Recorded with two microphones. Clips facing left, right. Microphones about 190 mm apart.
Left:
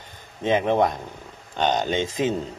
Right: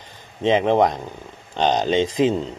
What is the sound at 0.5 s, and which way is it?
Speech, 25° right (ahead or behind).